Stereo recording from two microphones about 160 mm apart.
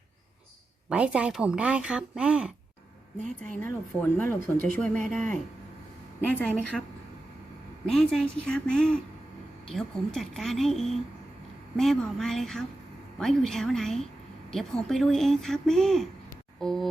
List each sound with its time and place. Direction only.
0.9 s speech: 5° right (ahead or behind)
3.2 s speech: 55° right (ahead or behind)
3.6 s speech: 10° left (ahead or behind)
4.9 s speech: 55° right (ahead or behind)
6.3 s speech: 5° left (ahead or behind)
7.9 s speech: centre (ahead or behind)